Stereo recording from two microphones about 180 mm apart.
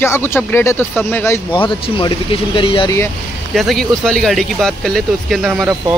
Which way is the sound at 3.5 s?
Centre (ahead or behind).